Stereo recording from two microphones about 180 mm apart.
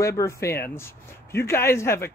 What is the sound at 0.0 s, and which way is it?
Speech, 15° left (ahead or behind).